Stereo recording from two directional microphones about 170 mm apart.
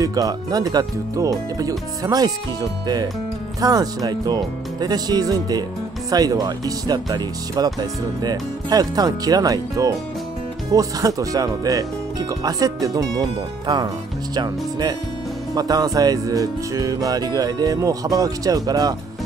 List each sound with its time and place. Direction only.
0.0 s speech: 20° right (ahead or behind)